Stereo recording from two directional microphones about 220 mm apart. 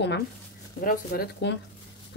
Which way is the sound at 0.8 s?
40° left (ahead or behind).